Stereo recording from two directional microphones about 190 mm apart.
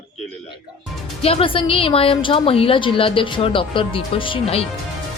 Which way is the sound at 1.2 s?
30° left (ahead or behind).